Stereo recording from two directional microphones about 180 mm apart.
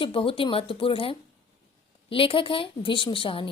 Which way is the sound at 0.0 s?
30° left (ahead or behind).